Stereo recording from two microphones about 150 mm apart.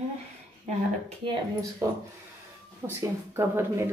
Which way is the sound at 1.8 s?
20° right (ahead or behind).